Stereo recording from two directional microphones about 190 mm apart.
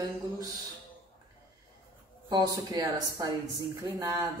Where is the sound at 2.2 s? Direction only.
20° right (ahead or behind).